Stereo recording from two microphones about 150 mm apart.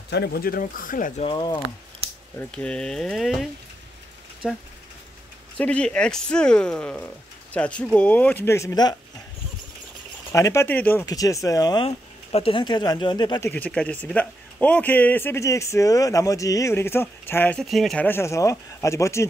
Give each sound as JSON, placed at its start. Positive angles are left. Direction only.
{"t": 0.2, "sound": "speech", "side_deg": 85}
{"t": 1.2, "sound": "speech", "side_deg": 30}
{"t": 2.3, "sound": "speech", "side_deg": 5}
{"t": 5.6, "sound": "a man's voice", "side_deg": 5}
{"t": 10.3, "sound": "a man's voice", "side_deg": 20}
{"t": 11.1, "sound": "speech", "side_deg": 25}
{"t": 11.8, "sound": "speech", "side_deg": 40}
{"t": 13.4, "sound": "a man's voice", "side_deg": 10}
{"t": 17.6, "sound": "speech", "side_deg": 0}
{"t": 18.0, "sound": "speech", "side_deg": 15}